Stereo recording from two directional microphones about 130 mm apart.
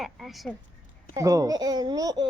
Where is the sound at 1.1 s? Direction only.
25° right (ahead or behind).